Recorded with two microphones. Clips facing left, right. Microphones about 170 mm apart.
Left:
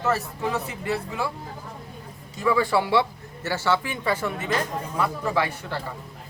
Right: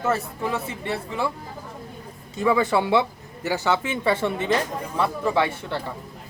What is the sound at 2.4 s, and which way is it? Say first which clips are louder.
Speech: right 2 dB; 20° right (ahead or behind).